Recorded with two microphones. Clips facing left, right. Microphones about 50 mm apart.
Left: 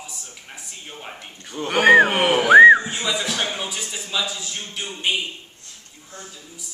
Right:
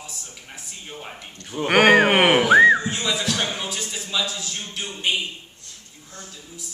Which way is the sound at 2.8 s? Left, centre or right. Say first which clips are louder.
Even; centre.